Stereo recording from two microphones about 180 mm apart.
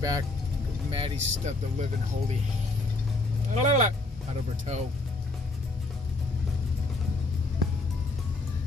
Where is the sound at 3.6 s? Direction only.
40° right (ahead or behind).